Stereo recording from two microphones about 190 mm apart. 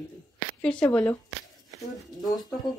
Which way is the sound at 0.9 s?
5° left (ahead or behind).